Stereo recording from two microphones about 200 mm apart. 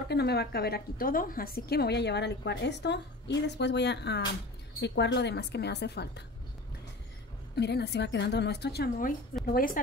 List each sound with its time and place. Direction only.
0.1 s a woman's voice: 55° left (ahead or behind)
7.5 s a woman's voice: 55° left (ahead or behind)